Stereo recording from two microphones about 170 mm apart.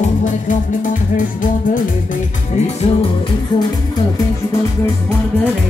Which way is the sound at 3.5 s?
25° left (ahead or behind).